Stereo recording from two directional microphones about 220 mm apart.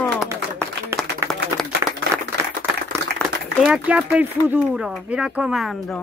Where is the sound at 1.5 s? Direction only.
15° right (ahead or behind).